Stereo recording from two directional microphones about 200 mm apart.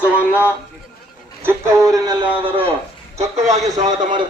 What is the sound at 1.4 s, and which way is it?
Speech, 10° right (ahead or behind).